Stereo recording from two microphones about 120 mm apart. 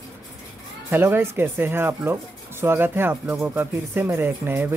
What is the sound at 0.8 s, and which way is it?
Speech, 20° right (ahead or behind).